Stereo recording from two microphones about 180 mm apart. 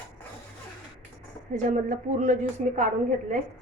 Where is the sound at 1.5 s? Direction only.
45° right (ahead or behind).